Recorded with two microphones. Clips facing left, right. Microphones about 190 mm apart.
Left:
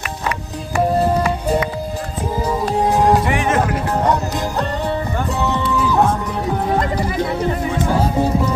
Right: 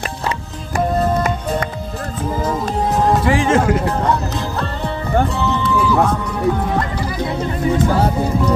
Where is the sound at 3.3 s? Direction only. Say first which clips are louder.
Right 3 dB; 30° right (ahead or behind).